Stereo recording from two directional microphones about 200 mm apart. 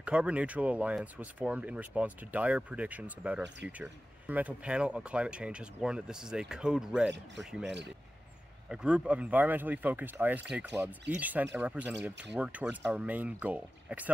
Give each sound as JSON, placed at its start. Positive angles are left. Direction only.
{"t": 0.0, "sound": "speech", "side_deg": -5}